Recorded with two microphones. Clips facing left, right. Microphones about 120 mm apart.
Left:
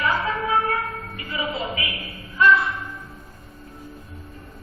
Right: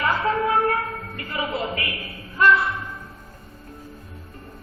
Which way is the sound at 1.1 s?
55° right (ahead or behind).